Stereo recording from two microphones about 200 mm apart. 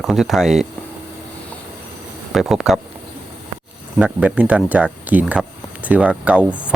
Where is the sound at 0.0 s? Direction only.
Centre (ahead or behind).